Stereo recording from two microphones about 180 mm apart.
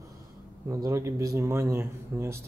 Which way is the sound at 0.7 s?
15° right (ahead or behind).